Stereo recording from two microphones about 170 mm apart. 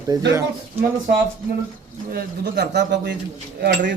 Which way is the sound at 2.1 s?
70° right (ahead or behind).